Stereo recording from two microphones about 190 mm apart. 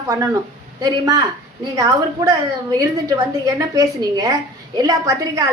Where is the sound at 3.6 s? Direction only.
20° right (ahead or behind).